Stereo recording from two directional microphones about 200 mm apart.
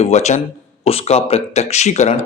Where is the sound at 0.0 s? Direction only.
35° left (ahead or behind).